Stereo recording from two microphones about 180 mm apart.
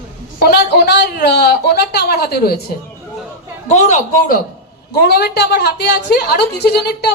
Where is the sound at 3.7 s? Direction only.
40° left (ahead or behind).